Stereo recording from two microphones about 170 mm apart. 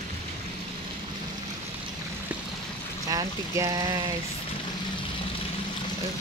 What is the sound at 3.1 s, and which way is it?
Speech, 20° right (ahead or behind).